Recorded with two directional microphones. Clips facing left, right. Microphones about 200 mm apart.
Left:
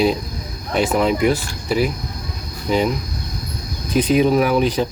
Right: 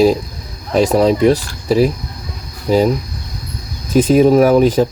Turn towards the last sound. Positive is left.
turn(degrees=-45)  # may be behind; listen again after turning